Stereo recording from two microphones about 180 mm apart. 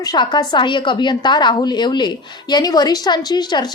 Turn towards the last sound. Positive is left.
turn(degrees=25)  # may be behind; listen again after turning